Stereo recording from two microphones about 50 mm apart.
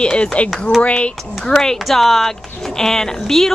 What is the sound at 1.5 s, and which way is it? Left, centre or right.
Speech, centre.